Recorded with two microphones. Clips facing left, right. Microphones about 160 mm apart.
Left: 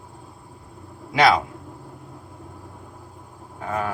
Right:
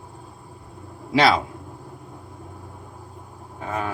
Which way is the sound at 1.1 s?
30° right (ahead or behind).